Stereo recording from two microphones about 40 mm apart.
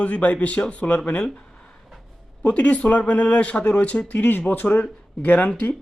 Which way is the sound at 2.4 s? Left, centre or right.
Left.